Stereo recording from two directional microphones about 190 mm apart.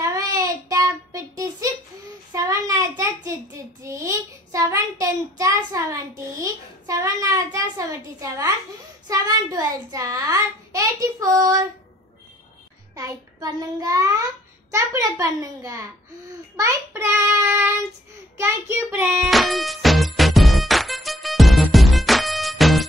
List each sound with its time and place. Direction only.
0.0 s child singing: 20° right (ahead or behind)
9.0 s a sound: 20° right (ahead or behind)
12.9 s a child's voice: 20° right (ahead or behind)
16.5 s child singing: 15° right (ahead or behind)
18.4 s a child's voice: 15° right (ahead or behind)
19.2 s music: centre (ahead or behind)